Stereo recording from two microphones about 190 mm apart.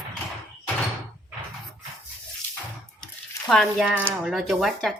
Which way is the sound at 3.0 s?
Centre (ahead or behind).